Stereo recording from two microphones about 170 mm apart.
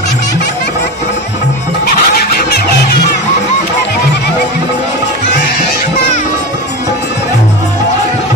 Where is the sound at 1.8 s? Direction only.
70° left (ahead or behind).